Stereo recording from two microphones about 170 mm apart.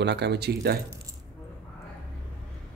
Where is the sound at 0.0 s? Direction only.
85° right.